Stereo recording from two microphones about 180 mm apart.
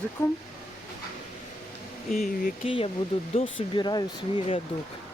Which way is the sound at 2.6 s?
30° left (ahead or behind).